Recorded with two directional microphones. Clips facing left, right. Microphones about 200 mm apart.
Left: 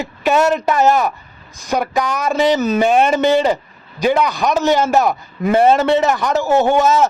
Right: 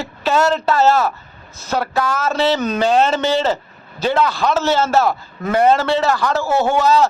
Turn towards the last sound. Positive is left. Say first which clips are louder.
# left 2 dB
turn(degrees=20)  # may be behind; listen again after turning